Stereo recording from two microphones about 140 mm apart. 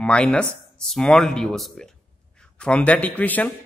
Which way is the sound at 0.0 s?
5° left (ahead or behind).